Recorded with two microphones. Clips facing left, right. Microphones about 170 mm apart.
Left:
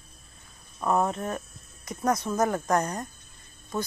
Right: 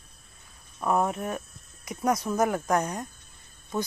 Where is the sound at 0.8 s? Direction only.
5° right (ahead or behind).